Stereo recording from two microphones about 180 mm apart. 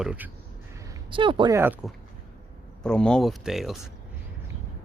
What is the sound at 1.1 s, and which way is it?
Speech, 30° right (ahead or behind).